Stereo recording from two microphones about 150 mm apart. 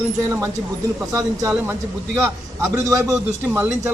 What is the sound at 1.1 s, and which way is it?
A man's voice, 20° right (ahead or behind).